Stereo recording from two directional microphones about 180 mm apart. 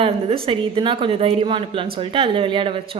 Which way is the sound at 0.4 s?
30° right (ahead or behind).